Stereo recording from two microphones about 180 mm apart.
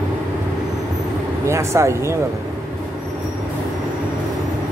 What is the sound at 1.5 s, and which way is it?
Speech, 15° right (ahead or behind).